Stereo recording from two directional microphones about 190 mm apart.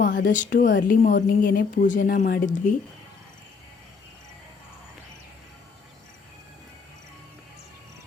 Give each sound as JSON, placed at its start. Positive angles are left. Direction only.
{"t": 0.0, "sound": "speech", "side_deg": 70}
{"t": 0.3, "sound": "speech", "side_deg": 45}